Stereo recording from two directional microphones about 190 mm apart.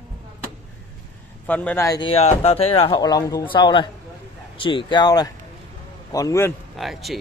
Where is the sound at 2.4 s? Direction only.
30° left (ahead or behind); by 6.5 s 15° left (ahead or behind).